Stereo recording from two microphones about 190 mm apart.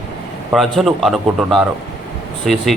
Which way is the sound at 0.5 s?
Centre (ahead or behind).